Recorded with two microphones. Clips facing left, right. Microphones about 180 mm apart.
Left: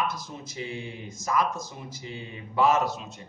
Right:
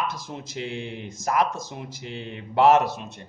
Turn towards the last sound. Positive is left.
turn(degrees=-65)  # may be behind; listen again after turning